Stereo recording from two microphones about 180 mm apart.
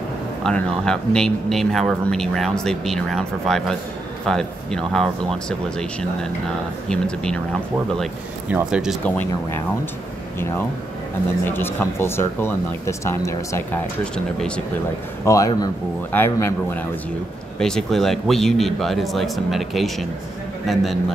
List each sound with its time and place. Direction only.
0.4 s speech: 5° left (ahead or behind)
8.0 s speech: 5° right (ahead or behind)
9.0 s speech: 10° left (ahead or behind)
11.4 s speech: 10° left (ahead or behind)
15.2 s speech: 20° left (ahead or behind)
17.6 s speech: 5° left (ahead or behind)